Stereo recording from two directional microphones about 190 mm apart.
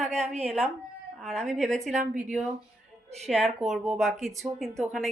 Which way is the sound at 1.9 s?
40° right (ahead or behind).